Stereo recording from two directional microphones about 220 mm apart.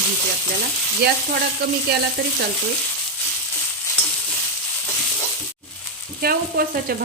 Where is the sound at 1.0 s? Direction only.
45° right (ahead or behind).